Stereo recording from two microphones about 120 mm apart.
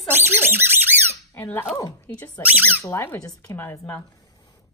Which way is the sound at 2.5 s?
15° right (ahead or behind).